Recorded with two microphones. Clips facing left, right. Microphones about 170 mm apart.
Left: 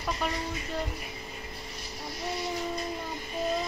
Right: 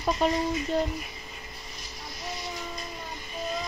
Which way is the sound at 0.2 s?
25° right (ahead or behind).